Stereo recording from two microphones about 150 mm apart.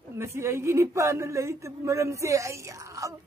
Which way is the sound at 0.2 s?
15° right (ahead or behind).